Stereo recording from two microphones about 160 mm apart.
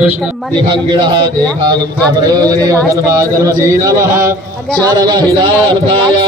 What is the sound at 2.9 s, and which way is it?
A man's voice, 20° right (ahead or behind).